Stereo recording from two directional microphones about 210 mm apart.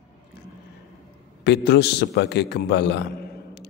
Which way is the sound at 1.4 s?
55° left (ahead or behind).